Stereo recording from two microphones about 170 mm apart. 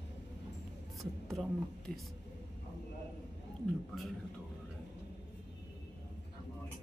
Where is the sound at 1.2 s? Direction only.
Centre (ahead or behind).